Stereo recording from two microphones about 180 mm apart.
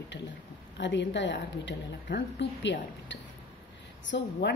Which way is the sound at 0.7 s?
85° left.